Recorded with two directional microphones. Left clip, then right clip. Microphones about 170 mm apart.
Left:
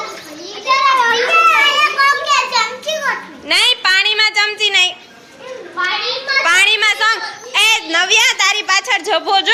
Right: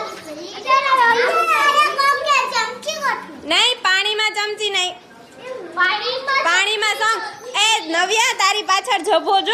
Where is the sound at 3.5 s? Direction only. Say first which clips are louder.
Left 3 dB; 20° right (ahead or behind).